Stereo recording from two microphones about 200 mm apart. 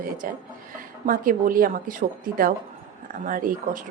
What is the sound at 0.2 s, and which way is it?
A woman's voice, 45° right (ahead or behind).